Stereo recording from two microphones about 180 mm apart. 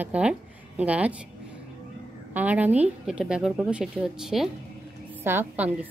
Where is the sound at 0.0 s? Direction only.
5° right (ahead or behind).